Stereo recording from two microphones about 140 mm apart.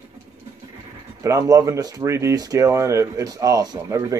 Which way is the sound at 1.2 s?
20° right (ahead or behind).